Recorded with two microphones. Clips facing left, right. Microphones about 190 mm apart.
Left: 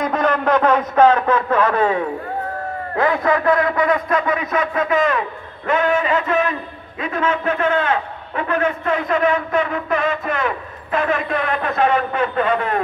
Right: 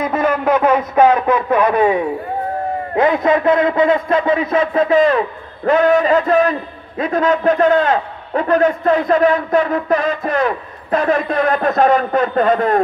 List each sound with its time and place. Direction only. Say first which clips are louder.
0.0 s a man's voice: right 2 dB; 5° right (ahead or behind); by 12.8 s 40° right (ahead or behind)